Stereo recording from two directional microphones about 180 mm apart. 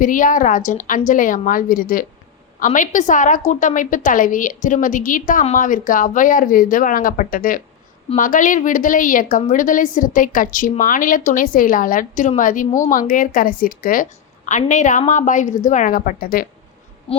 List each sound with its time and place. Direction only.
0.0 s a woman's voice: 50° left (ahead or behind)
17.1 s owl: 30° left (ahead or behind)